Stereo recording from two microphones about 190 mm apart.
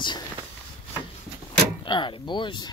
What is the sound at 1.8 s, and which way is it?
Speech, 25° left (ahead or behind).